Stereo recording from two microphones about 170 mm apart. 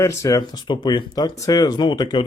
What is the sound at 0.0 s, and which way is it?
Speech, 15° left (ahead or behind).